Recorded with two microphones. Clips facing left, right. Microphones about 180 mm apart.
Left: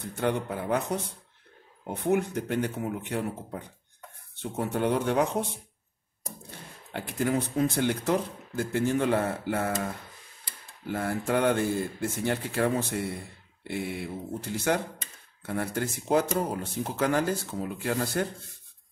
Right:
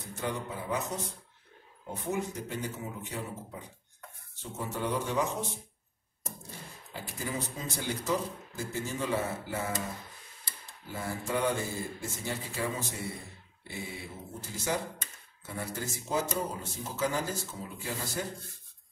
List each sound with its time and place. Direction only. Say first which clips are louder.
0.0 s speech: left 7 dB; 65° left (ahead or behind)
2.0 s speech: left 8 dB; 65° left (ahead or behind)
6.9 s speech: left 10 dB; 65° left (ahead or behind)
10.9 s speech: left 7 dB; 60° left (ahead or behind)